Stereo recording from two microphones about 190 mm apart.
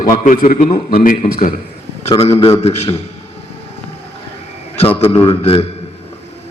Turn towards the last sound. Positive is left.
turn(degrees=30)  # may be behind; listen again after turning